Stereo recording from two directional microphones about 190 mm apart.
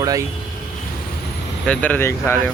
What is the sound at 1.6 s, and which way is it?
Speech, 5° left (ahead or behind).